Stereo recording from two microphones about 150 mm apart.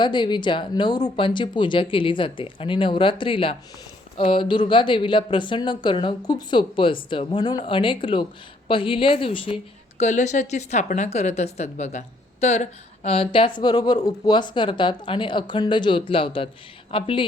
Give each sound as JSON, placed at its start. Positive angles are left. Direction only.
{"t": 0.0, "sound": "a woman's voice", "side_deg": 30}
{"t": 10.0, "sound": "a woman's voice", "side_deg": 50}